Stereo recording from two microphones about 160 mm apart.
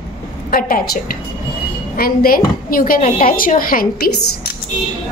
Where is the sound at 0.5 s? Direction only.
70° left (ahead or behind).